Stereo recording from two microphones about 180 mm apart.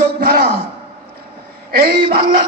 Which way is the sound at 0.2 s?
60° right (ahead or behind).